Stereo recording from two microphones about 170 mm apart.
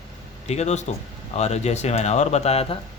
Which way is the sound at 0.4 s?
40° left (ahead or behind).